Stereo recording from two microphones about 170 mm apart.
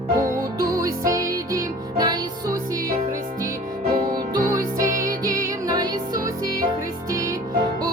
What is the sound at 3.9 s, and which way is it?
Music, 65° right (ahead or behind).